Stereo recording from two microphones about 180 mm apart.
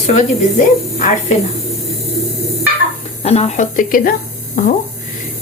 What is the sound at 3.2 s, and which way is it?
Speech, 35° left (ahead or behind).